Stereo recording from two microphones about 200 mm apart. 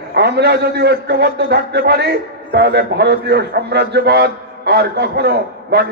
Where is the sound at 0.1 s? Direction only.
55° right (ahead or behind).